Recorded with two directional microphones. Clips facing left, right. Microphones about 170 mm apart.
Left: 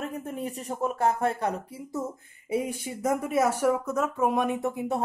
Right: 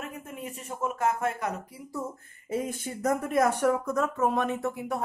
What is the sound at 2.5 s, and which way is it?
Speech, 10° left (ahead or behind).